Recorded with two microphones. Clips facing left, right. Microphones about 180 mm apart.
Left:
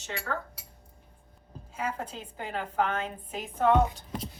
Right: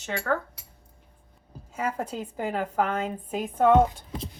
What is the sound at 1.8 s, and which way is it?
A woman's voice, 45° right (ahead or behind).